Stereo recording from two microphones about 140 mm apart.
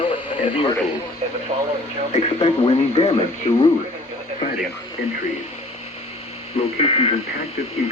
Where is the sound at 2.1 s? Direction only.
50° left (ahead or behind).